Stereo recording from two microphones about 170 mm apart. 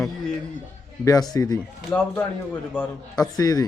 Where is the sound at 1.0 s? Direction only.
20° left (ahead or behind).